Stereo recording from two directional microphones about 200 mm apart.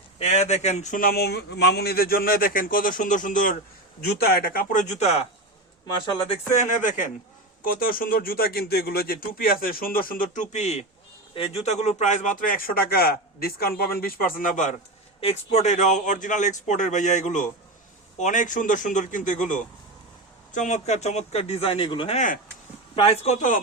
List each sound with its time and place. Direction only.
0.2 s a man's voice: 35° left (ahead or behind)